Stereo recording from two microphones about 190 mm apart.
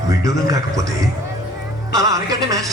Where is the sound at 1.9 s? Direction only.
20° right (ahead or behind).